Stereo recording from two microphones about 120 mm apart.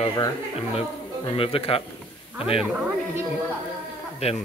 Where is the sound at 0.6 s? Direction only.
50° left (ahead or behind).